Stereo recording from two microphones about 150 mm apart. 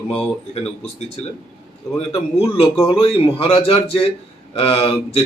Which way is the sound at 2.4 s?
40° left (ahead or behind).